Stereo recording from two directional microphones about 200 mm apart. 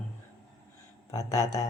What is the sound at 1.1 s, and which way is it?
Speech, 15° left (ahead or behind).